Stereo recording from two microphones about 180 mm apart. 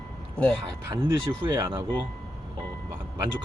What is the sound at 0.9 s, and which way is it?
Speech, 20° right (ahead or behind).